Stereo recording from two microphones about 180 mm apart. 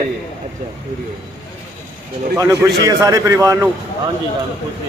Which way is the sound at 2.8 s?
20° right (ahead or behind).